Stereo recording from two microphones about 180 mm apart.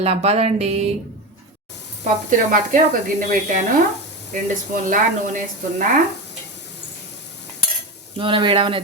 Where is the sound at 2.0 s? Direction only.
45° right (ahead or behind).